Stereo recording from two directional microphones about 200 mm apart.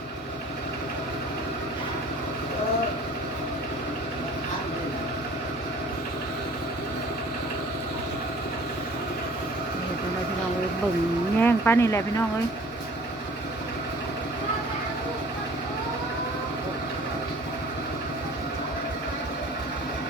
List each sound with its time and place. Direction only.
11.3 s speech: 10° left (ahead or behind)